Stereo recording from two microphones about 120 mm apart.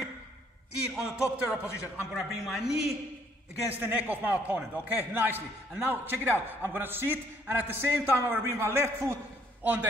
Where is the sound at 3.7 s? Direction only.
15° right (ahead or behind).